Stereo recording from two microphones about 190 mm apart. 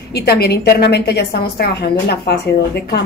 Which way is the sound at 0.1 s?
55° left (ahead or behind).